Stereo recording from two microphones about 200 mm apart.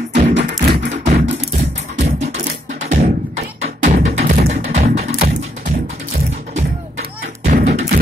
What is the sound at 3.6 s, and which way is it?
Music, 40° right (ahead or behind).